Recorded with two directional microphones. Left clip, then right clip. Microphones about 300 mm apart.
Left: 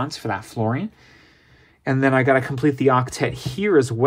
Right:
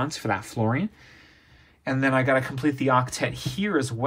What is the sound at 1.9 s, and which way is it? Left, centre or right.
Speech, left.